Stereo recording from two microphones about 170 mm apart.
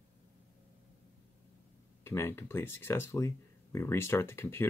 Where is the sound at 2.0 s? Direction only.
15° left (ahead or behind).